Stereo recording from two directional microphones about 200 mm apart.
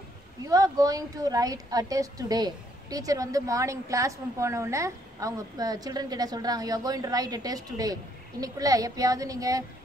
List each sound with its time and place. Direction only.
0.4 s a woman's voice: 20° right (ahead or behind)